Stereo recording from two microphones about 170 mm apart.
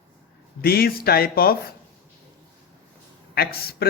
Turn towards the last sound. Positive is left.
turn(degrees=65)  # may be behind; listen again after turning